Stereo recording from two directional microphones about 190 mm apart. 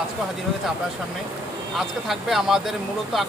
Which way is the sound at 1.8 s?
Centre (ahead or behind).